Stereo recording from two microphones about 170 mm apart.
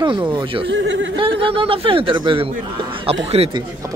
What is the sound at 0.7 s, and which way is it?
Speech, 90° right.